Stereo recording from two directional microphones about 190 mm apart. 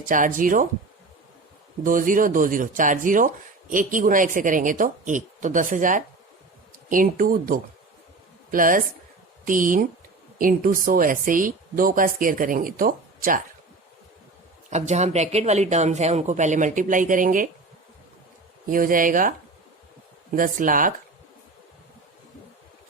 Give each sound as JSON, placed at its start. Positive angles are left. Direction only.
{"t": 0.1, "sound": "speech", "side_deg": -45}
{"t": 1.8, "sound": "speech", "side_deg": -45}
{"t": 14.7, "sound": "speech", "side_deg": -35}
{"t": 18.7, "sound": "speech", "side_deg": -45}
{"t": 20.3, "sound": "speech", "side_deg": -45}